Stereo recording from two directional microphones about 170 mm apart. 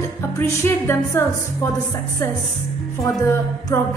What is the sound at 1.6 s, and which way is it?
Speech, 20° left (ahead or behind).